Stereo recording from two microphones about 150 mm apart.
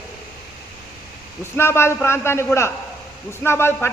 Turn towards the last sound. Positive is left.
turn(degrees=15)  # may be behind; listen again after turning